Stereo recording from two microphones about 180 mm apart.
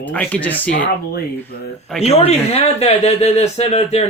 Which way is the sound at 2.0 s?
35° left (ahead or behind).